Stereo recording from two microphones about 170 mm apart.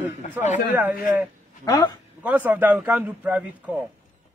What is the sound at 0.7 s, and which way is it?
Speech, 5° right (ahead or behind).